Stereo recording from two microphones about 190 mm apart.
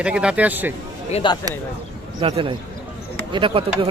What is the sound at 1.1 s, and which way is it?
Speech, 25° left (ahead or behind).